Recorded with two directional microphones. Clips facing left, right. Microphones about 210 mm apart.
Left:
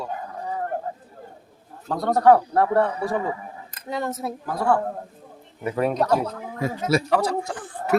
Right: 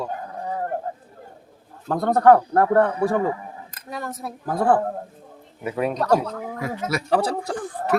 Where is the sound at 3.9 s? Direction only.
20° left (ahead or behind).